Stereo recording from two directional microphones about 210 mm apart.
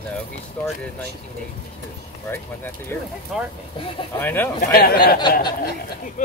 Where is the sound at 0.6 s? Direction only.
10° left (ahead or behind).